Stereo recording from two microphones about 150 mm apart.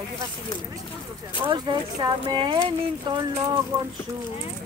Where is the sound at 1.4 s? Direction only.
35° right (ahead or behind).